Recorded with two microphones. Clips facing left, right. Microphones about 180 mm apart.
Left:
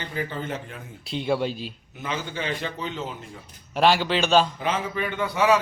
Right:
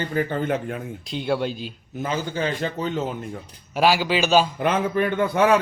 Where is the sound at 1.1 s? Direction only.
Centre (ahead or behind).